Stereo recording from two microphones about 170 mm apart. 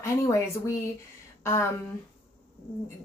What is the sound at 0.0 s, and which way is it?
Speech, 15° left (ahead or behind).